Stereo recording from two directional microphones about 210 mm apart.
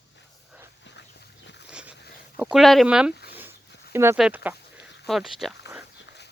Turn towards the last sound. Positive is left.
turn(degrees=0)  # may be behind; listen again after turning